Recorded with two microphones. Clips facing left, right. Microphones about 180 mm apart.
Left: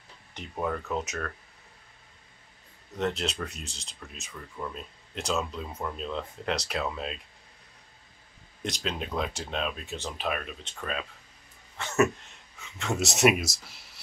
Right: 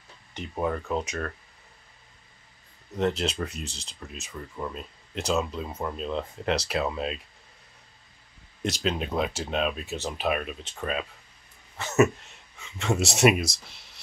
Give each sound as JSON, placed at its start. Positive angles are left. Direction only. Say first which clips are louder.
{"t": 0.6, "sound": "speech", "louder": "right 3 dB", "side_deg": -10}
{"t": 0.9, "sound": "speech", "louder": "right 3 dB", "side_deg": 0}
{"t": 3.0, "sound": "speech", "louder": "right 4 dB", "side_deg": 0}
{"t": 4.6, "sound": "speech", "louder": "right 2 dB", "side_deg": -25}
{"t": 5.1, "sound": "speech", "louder": "right 3 dB", "side_deg": 0}
{"t": 8.6, "sound": "speech", "louder": "right 5 dB", "side_deg": -5}